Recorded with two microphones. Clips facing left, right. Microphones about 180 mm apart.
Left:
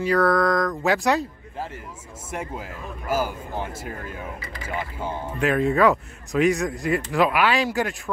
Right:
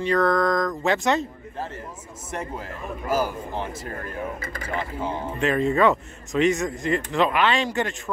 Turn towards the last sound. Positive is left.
turn(degrees=5)  # may be behind; listen again after turning